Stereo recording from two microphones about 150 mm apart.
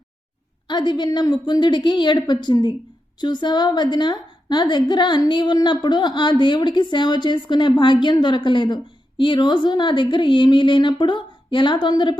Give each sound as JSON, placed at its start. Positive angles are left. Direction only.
{"t": 0.7, "sound": "a woman's voice", "side_deg": 30}